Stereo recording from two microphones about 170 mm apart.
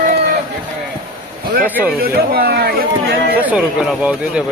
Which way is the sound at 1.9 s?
65° right (ahead or behind).